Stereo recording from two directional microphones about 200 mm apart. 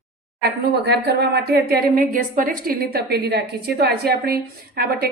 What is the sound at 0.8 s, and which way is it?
A woman's voice, 55° right (ahead or behind).